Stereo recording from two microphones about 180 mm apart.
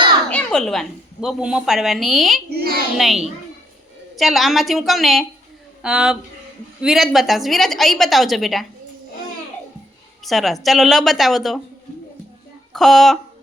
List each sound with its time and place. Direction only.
0.3 s a woman's voice: 5° left (ahead or behind)
2.5 s a sound: 55° right (ahead or behind)
3.0 s a woman's voice: centre (ahead or behind)
10.2 s a woman's voice: centre (ahead or behind)
12.7 s speech: centre (ahead or behind)